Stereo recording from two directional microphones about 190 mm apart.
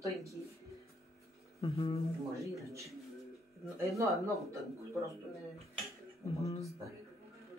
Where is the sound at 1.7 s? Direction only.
30° left (ahead or behind).